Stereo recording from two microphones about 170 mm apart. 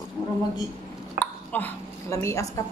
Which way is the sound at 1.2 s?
10° left (ahead or behind).